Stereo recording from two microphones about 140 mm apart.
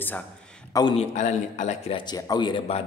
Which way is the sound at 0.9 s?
55° left (ahead or behind).